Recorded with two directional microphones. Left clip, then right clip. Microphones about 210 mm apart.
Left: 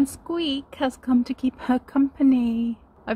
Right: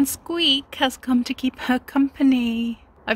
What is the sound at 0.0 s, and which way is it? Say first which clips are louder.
Speech: right 4 dB; centre (ahead or behind).